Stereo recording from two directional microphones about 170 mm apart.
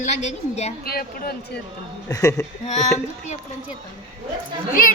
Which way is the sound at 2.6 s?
40° left (ahead or behind).